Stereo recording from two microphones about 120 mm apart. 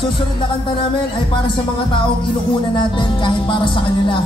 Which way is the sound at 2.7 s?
40° left (ahead or behind).